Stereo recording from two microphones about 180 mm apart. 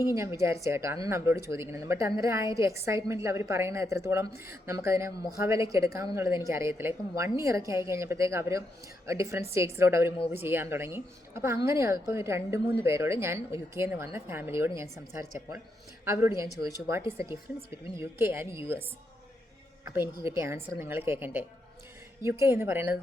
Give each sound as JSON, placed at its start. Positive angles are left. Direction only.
{"t": 0.0, "sound": "a woman's voice", "side_deg": -15}
{"t": 19.8, "sound": "a woman's voice", "side_deg": -15}